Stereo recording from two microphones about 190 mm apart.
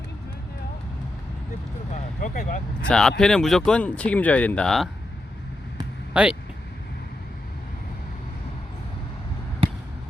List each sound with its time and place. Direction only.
1.9 s speech: 40° left (ahead or behind)
2.8 s speech: 5° left (ahead or behind)
6.2 s speech: 5° right (ahead or behind)